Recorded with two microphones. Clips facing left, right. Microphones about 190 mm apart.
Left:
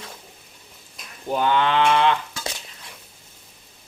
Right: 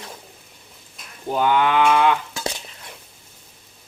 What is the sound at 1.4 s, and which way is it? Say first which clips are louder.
Speech: right 2 dB; 10° right (ahead or behind).